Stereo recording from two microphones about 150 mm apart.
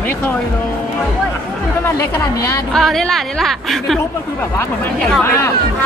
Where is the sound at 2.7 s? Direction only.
Centre (ahead or behind).